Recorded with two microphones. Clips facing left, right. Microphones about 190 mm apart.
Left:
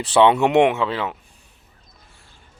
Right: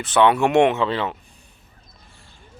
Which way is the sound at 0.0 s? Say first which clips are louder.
Left 2 dB; 30° left (ahead or behind).